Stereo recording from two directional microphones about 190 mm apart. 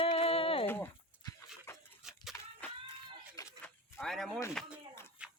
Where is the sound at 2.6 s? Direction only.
10° left (ahead or behind).